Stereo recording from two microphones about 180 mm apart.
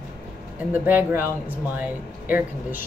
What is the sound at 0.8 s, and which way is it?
A woman's voice, 10° right (ahead or behind).